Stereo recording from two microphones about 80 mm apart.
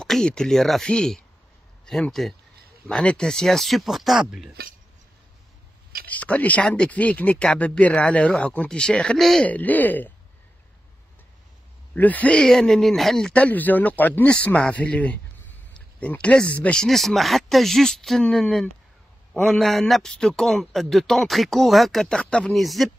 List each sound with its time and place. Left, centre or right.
0.0 s speech: centre
6.0 s speech: centre
9.5 s speech: left
11.9 s speech: centre
13.3 s speech: centre
16.8 s speech: centre
19.4 s speech: centre
22.2 s speech: centre
22.5 s speech: centre